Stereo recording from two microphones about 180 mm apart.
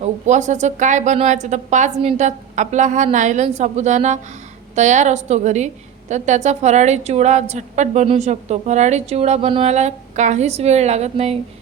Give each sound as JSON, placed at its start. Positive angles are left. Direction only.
{"t": 0.3, "sound": "a woman's voice", "side_deg": -40}